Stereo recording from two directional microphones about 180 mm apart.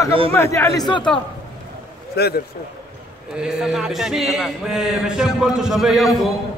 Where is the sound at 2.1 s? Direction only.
60° left (ahead or behind).